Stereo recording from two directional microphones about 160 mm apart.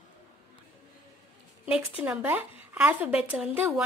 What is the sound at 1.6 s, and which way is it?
Speech, 5° right (ahead or behind).